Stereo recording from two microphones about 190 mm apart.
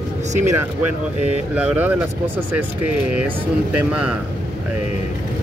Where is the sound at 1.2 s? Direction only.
5° right (ahead or behind).